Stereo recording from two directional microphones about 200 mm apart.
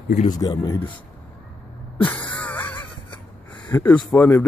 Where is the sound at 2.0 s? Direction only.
10° left (ahead or behind).